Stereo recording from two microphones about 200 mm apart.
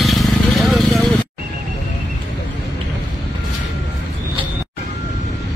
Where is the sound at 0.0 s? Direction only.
Centre (ahead or behind).